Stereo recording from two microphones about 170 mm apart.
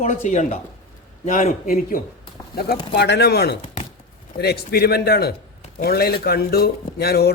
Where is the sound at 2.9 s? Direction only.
75° left (ahead or behind).